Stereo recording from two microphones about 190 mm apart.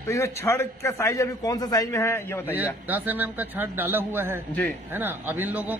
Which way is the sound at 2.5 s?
10° right (ahead or behind).